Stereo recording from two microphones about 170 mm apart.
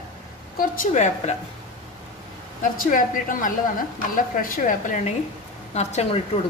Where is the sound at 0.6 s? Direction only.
50° left (ahead or behind).